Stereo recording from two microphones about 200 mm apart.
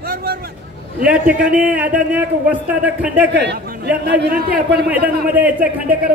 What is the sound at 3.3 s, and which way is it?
Speech, 60° right (ahead or behind).